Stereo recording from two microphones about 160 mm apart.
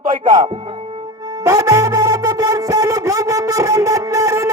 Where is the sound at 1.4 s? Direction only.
20° right (ahead or behind).